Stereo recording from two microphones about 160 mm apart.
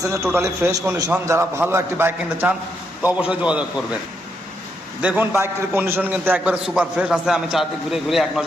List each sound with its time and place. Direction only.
0.3 s a man's voice: 15° right (ahead or behind)
5.0 s a man's voice: 10° right (ahead or behind)